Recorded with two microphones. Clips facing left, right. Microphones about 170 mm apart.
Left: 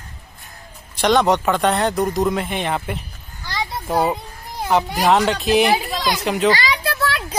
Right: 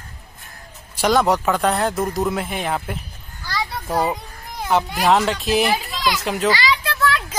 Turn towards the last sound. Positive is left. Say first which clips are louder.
# right 1 dB
turn(degrees=35)  # may be behind; listen again after turning